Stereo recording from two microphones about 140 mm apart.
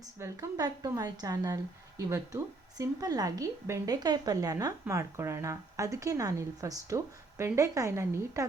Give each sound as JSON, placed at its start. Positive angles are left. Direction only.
{"t": 0.2, "sound": "a woman's voice", "side_deg": -25}